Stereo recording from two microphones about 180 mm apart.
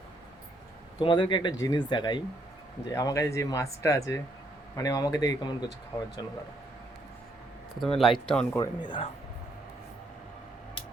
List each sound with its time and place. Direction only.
0.9 s speech: 25° left (ahead or behind)
7.8 s speech: centre (ahead or behind)
8.5 s speech: 20° left (ahead or behind)